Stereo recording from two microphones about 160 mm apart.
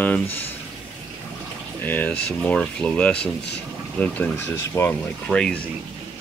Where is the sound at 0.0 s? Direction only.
10° left (ahead or behind).